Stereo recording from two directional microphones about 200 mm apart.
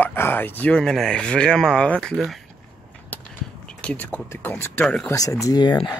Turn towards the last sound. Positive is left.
turn(degrees=20)  # may be behind; listen again after turning